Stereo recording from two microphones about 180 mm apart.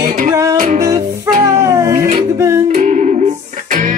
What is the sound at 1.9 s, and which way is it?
Music, 45° right (ahead or behind).